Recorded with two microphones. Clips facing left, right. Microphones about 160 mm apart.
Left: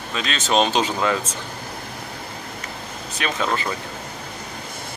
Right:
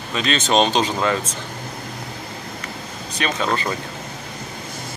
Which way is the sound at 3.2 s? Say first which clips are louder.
Right 2 dB; 5° left (ahead or behind).